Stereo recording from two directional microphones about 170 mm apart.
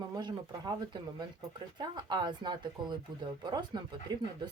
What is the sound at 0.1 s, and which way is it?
Speech, 25° right (ahead or behind).